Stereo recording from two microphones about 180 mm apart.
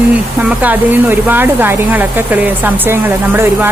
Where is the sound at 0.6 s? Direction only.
10° right (ahead or behind).